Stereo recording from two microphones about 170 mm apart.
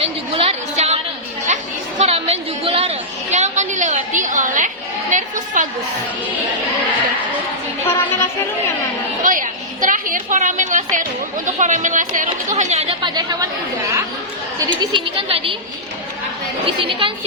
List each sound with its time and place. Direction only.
0.0 s chatter: 35° right (ahead or behind)
5.1 s a woman's voice: 50° right (ahead or behind)
7.9 s a woman's voice: 15° left (ahead or behind)
9.2 s a woman's voice: 50° right (ahead or behind); by 13.5 s 25° right (ahead or behind)
14.7 s a woman's voice: 25° right (ahead or behind)
16.6 s a woman's voice: 30° right (ahead or behind)